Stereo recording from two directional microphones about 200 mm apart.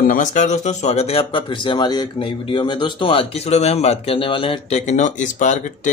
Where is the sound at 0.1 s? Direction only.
40° left (ahead or behind).